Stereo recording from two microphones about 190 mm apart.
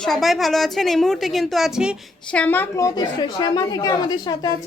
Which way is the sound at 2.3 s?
10° left (ahead or behind).